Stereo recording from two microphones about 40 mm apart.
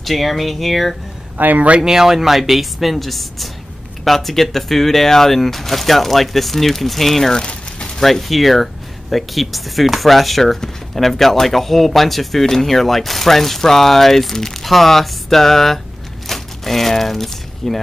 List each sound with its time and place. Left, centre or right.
0.0 s speech: centre
1.4 s speech: right
1.8 s speech: centre
7.3 s a sound: left
8.0 s speech: centre
16.3 s a sound: centre